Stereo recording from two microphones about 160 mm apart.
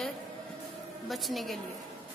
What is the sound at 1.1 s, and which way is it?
Speech, centre (ahead or behind).